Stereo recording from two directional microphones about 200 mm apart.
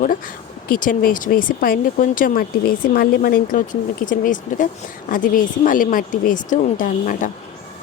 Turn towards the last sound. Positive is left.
turn(degrees=40)  # may be behind; listen again after turning